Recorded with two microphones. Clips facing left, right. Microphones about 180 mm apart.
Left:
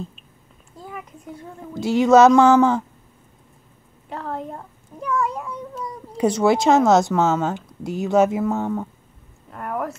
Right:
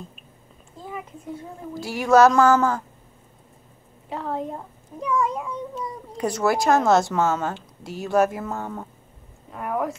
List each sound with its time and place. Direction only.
1.8 s speech: 20° left (ahead or behind)
4.1 s a child's voice: 5° right (ahead or behind)
5.2 s cat: centre (ahead or behind)
6.4 s a woman's voice: 25° left (ahead or behind)
8.4 s a woman's voice: 5° left (ahead or behind)
9.5 s speech: 5° right (ahead or behind)